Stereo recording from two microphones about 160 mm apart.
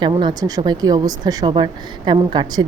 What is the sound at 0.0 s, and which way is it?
A woman's voice, 30° right (ahead or behind).